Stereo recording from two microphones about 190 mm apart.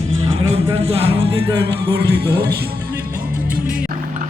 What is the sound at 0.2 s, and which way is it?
Music, 30° right (ahead or behind).